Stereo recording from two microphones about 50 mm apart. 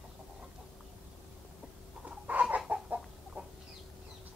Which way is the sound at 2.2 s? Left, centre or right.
Right.